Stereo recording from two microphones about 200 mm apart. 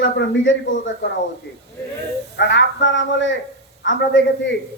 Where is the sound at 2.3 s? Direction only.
60° left (ahead or behind).